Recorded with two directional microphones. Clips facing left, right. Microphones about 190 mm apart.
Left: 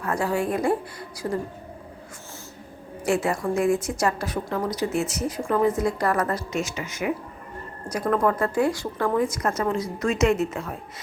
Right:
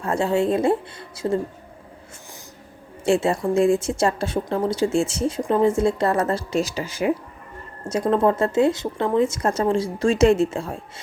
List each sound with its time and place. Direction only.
0.0 s a woman's voice: 25° right (ahead or behind)
3.0 s a woman's voice: 25° right (ahead or behind)